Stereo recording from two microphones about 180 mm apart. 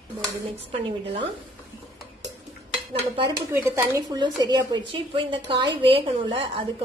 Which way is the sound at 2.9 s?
20° right (ahead or behind).